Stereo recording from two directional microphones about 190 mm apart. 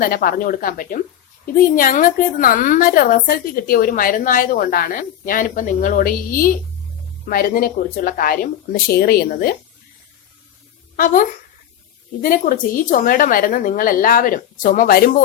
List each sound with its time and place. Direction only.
0.0 s a woman's voice: 50° left (ahead or behind)
10.9 s a woman's voice: 45° left (ahead or behind)